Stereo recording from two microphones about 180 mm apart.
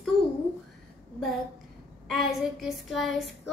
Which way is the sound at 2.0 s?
Centre (ahead or behind).